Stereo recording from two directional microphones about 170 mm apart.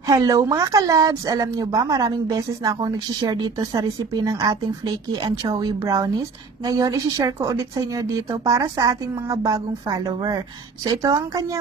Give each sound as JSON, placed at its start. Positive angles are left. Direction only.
{"t": 0.0, "sound": "a woman's voice", "side_deg": -20}